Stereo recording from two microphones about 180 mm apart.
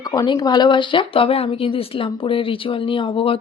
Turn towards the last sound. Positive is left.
turn(degrees=30)  # may be behind; listen again after turning